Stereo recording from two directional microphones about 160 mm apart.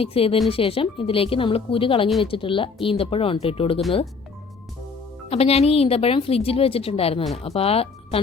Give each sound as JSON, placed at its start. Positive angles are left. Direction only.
{"t": 0.0, "sound": "a woman's voice", "side_deg": 35}
{"t": 5.3, "sound": "a woman's voice", "side_deg": 40}